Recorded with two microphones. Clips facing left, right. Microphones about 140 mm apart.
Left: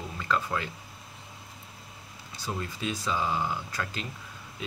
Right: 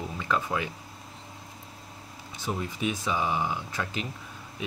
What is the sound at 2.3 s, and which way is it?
Speech, 20° right (ahead or behind).